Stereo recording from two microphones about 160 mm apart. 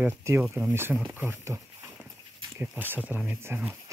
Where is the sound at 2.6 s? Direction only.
10° right (ahead or behind).